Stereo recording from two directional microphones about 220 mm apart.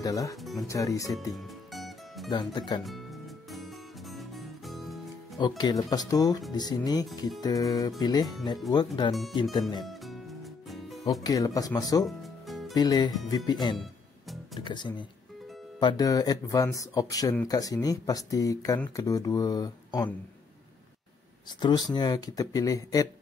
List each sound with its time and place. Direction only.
0.0 s speech: 15° left (ahead or behind)
0.4 s speech: centre (ahead or behind)
0.7 s speech: 15° left (ahead or behind)
1.3 s music: centre (ahead or behind)
2.3 s speech: 20° left (ahead or behind)
2.8 s music: centre (ahead or behind)
5.6 s speech: 15° left (ahead or behind)
9.8 s music: centre (ahead or behind)
11.2 s speech: 15° left (ahead or behind)
12.1 s music: centre (ahead or behind)
12.7 s speech: 15° left (ahead or behind)
21.5 s speech: 20° left (ahead or behind)